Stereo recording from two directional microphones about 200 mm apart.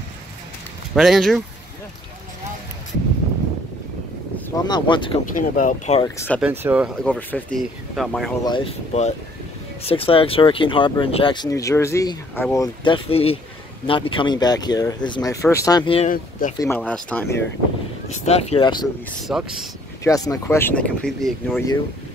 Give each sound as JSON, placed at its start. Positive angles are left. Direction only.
{"t": 0.9, "sound": "speech", "side_deg": 0}
{"t": 4.6, "sound": "speech", "side_deg": 20}
{"t": 5.3, "sound": "speech", "side_deg": 40}
{"t": 6.0, "sound": "speech", "side_deg": 10}
{"t": 6.4, "sound": "speech", "side_deg": -10}
{"t": 7.1, "sound": "speech", "side_deg": 10}
{"t": 8.5, "sound": "speech", "side_deg": 25}
{"t": 16.1, "sound": "speech", "side_deg": 40}
{"t": 16.5, "sound": "speech", "side_deg": 15}
{"t": 18.0, "sound": "speech", "side_deg": 30}
{"t": 19.2, "sound": "speech", "side_deg": 0}
{"t": 20.0, "sound": "speech", "side_deg": 15}